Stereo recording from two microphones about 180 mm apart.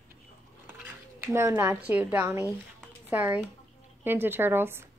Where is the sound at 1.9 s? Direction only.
10° right (ahead or behind).